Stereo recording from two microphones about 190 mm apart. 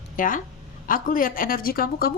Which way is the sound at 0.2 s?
45° left (ahead or behind).